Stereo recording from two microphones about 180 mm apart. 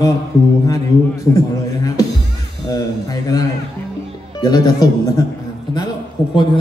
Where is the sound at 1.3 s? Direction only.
20° left (ahead or behind).